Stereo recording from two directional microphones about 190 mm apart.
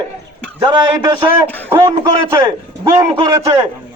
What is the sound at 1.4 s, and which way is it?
Speech, 15° right (ahead or behind).